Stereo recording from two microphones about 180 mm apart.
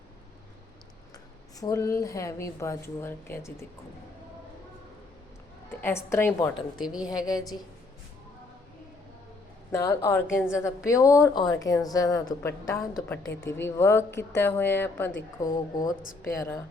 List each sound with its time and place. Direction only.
1.5 s a woman's voice: 20° left (ahead or behind)
5.8 s a woman's voice: 15° left (ahead or behind)
6.8 s a woman's voice: 5° right (ahead or behind)
9.7 s a woman's voice: 20° left (ahead or behind)